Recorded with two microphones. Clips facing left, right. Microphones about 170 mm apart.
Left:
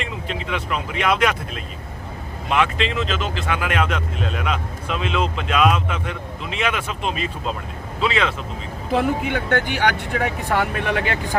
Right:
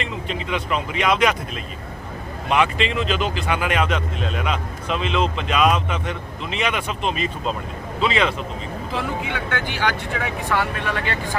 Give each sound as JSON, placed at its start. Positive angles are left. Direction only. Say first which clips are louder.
{"t": 0.3, "sound": "speech", "louder": "right 1 dB", "side_deg": 0}
{"t": 2.5, "sound": "speech", "louder": "right 1 dB", "side_deg": 0}
{"t": 8.9, "sound": "speech", "louder": "left 7 dB", "side_deg": 55}